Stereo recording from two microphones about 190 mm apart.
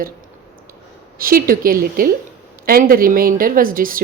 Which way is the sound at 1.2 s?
50° right (ahead or behind).